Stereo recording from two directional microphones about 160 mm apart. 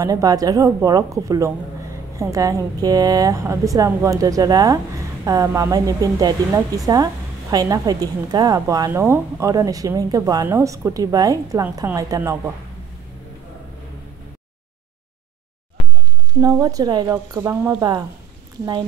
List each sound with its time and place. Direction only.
0.0 s a woman's voice: 25° right (ahead or behind)
16.3 s a woman's voice: 20° right (ahead or behind)